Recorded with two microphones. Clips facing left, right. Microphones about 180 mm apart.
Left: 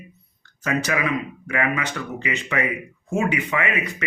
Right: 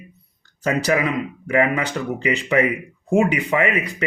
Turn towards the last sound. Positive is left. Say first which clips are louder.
# right 5 dB
turn(degrees=-35)  # may be behind; listen again after turning